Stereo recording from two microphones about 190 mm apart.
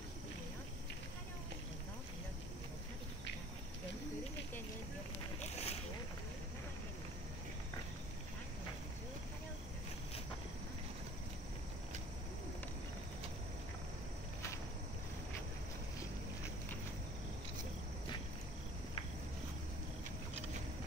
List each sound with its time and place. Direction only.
5.4 s boat: 35° left (ahead or behind)